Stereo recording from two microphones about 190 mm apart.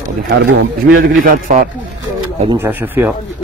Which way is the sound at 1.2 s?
45° right (ahead or behind).